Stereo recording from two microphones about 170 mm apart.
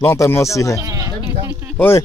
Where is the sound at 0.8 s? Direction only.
20° right (ahead or behind).